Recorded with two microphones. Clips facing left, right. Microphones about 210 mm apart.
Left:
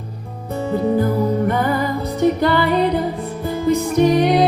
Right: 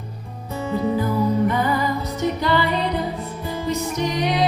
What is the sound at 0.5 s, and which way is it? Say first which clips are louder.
Music: left 4 dB; 55° left (ahead or behind).